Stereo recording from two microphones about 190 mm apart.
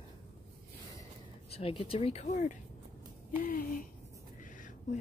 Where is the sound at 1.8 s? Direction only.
35° left (ahead or behind).